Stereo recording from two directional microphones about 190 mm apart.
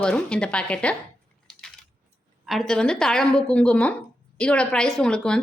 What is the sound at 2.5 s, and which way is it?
Speech, 5° left (ahead or behind).